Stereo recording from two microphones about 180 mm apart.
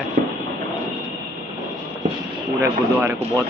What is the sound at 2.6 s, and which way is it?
Speech, 15° right (ahead or behind).